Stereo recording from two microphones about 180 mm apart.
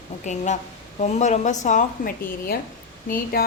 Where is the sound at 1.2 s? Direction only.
40° left (ahead or behind).